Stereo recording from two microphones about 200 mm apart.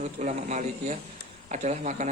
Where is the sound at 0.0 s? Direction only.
35° right (ahead or behind).